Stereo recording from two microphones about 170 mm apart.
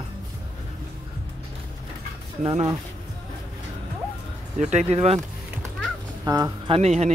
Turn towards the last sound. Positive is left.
turn(degrees=-40)  # may be behind; listen again after turning